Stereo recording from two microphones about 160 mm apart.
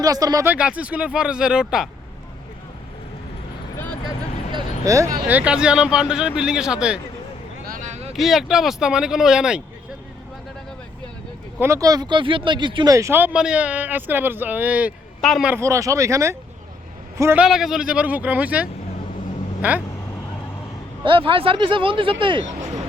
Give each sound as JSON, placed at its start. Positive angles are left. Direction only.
{"t": 0.0, "sound": "speech", "side_deg": -25}
{"t": 0.5, "sound": "speech", "side_deg": -10}
{"t": 4.5, "sound": "speech", "side_deg": -20}
{"t": 5.3, "sound": "speech", "side_deg": -5}
{"t": 7.7, "sound": "a sound", "side_deg": -50}
{"t": 8.1, "sound": "speech", "side_deg": 0}
{"t": 11.6, "sound": "speech", "side_deg": -20}
{"t": 15.5, "sound": "speech", "side_deg": -20}
{"t": 17.4, "sound": "speech", "side_deg": 0}
{"t": 21.0, "sound": "speech", "side_deg": -30}